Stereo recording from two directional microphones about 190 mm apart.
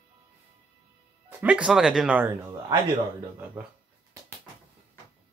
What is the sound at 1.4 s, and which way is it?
Speech, 5° right (ahead or behind).